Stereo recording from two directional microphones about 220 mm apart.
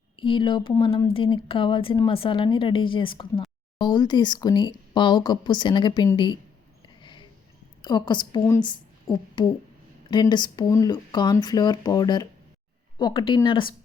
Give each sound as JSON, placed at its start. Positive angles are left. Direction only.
{"t": 0.2, "sound": "speech", "side_deg": 20}
{"t": 6.8, "sound": "a sound", "side_deg": 20}
{"t": 7.8, "sound": "a woman's voice", "side_deg": 20}